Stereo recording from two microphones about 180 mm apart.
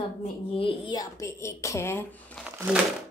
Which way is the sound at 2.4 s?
10° right (ahead or behind).